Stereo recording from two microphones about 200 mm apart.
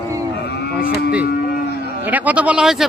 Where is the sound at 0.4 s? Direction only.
55° left (ahead or behind).